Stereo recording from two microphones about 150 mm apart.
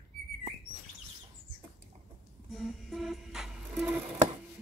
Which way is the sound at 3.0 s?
5° right (ahead or behind).